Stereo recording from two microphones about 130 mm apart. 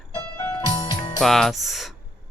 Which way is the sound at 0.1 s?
35° left (ahead or behind).